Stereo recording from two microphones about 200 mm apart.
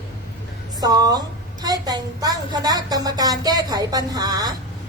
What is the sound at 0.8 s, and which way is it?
A woman's voice, 20° right (ahead or behind).